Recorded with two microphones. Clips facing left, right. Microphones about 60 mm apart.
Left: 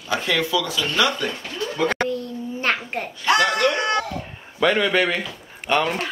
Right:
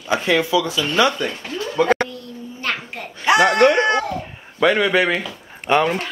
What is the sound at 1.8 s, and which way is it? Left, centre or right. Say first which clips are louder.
Speech: right 6 dB; centre.